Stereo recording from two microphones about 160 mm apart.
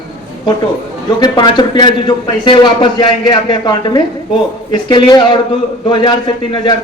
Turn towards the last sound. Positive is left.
turn(degrees=30)  # may be behind; listen again after turning